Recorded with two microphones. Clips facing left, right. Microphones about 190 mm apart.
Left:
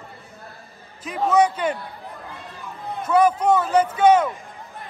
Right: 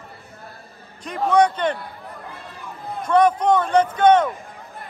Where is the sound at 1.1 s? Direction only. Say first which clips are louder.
Right 1 dB; 5° left (ahead or behind).